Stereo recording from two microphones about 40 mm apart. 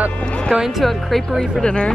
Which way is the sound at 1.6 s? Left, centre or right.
Centre.